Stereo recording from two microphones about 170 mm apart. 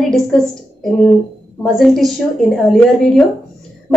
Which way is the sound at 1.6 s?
Centre (ahead or behind).